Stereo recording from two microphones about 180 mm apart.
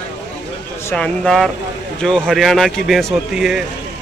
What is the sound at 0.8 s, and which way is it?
A man's voice, 5° left (ahead or behind).